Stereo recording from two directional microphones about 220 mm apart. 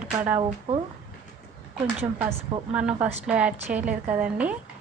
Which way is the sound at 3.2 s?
5° right (ahead or behind).